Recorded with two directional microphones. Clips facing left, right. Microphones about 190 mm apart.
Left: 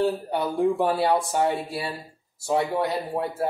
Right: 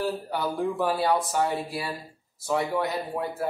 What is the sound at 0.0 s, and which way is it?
Speech, 25° left (ahead or behind).